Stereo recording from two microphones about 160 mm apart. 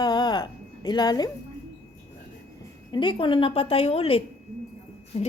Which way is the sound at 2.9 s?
30° left (ahead or behind).